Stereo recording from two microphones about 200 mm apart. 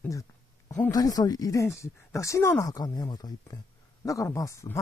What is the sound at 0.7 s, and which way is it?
Speech, 15° left (ahead or behind).